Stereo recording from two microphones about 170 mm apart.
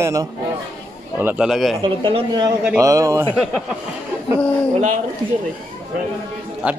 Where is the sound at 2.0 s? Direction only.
25° right (ahead or behind).